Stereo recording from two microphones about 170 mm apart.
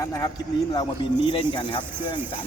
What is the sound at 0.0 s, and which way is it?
Speech, 20° left (ahead or behind).